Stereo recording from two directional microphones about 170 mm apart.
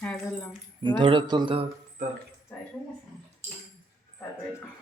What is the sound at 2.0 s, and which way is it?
Speech, 55° right (ahead or behind).